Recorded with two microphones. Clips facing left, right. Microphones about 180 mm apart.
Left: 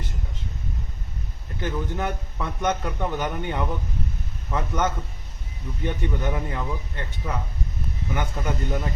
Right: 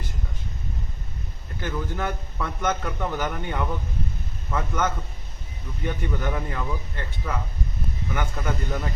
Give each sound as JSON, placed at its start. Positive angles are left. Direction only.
{"t": 1.6, "sound": "a man's voice", "side_deg": 20}